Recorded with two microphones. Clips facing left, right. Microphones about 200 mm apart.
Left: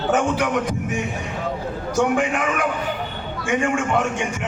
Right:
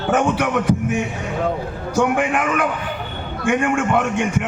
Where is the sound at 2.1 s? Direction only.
60° right (ahead or behind).